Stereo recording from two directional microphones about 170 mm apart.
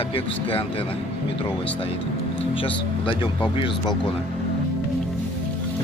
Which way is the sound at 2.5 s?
30° left (ahead or behind).